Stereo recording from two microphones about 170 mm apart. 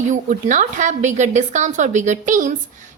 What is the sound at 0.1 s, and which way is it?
A woman's voice, 50° right (ahead or behind).